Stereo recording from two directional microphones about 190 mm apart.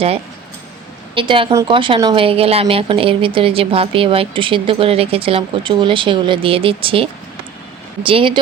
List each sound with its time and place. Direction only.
1.1 s a woman's voice: 25° right (ahead or behind)